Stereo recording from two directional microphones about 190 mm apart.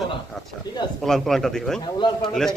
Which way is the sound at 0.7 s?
20° left (ahead or behind).